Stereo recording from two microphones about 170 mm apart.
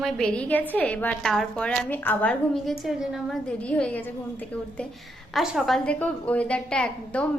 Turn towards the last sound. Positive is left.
turn(degrees=5)  # may be behind; listen again after turning